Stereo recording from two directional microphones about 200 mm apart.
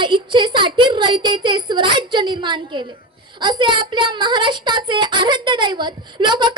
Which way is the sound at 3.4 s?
25° right (ahead or behind).